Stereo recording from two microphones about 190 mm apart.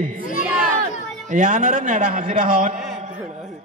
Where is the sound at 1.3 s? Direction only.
40° right (ahead or behind).